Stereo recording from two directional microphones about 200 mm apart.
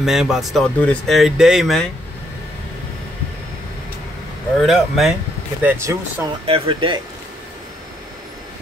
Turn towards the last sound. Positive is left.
turn(degrees=-25)  # may be behind; listen again after turning